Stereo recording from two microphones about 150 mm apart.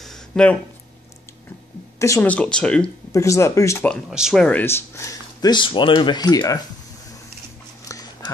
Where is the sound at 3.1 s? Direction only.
20° left (ahead or behind).